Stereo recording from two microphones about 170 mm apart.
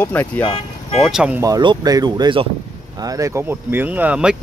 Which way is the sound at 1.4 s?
25° right (ahead or behind).